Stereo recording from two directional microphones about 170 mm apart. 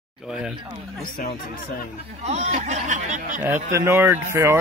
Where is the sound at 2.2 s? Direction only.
40° right (ahead or behind).